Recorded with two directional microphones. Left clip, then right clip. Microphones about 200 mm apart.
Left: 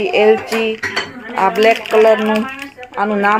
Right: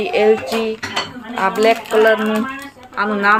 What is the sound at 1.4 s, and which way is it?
A woman's voice, 15° left (ahead or behind).